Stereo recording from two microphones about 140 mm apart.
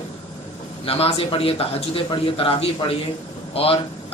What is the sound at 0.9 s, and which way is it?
A man's voice, 45° left (ahead or behind).